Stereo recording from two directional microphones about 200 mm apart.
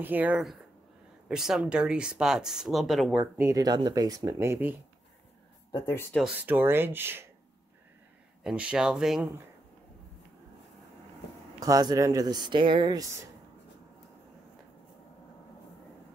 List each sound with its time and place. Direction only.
0.0 s speech: 10° right (ahead or behind)
3.3 s speech: 15° right (ahead or behind)
5.7 s speech: 10° left (ahead or behind)
6.2 s speech: 5° right (ahead or behind)
8.5 s speech: 5° right (ahead or behind)
11.6 s speech: 20° right (ahead or behind)